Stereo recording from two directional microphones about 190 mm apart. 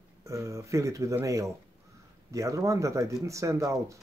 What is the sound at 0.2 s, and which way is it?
Speech, 15° right (ahead or behind).